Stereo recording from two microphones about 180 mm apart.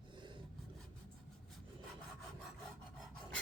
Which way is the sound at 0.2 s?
25° right (ahead or behind).